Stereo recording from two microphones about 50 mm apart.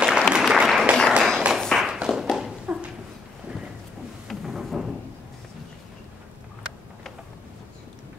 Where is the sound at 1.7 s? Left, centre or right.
Centre.